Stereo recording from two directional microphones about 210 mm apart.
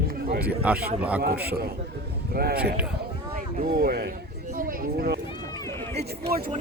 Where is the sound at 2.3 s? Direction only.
45° right (ahead or behind).